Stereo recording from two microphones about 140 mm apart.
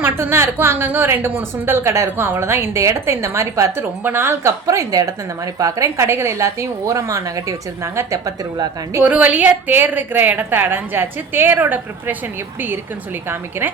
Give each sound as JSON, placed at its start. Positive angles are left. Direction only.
{"t": 0.0, "sound": "a woman's voice", "side_deg": -15}
{"t": 9.0, "sound": "a woman's voice", "side_deg": -10}